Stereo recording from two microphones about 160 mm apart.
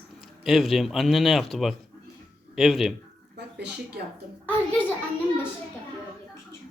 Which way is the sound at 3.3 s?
90° right.